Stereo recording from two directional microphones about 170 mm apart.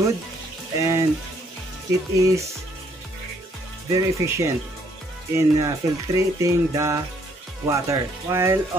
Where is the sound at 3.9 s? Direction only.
15° right (ahead or behind).